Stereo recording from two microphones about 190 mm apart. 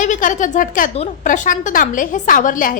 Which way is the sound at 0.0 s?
45° left (ahead or behind).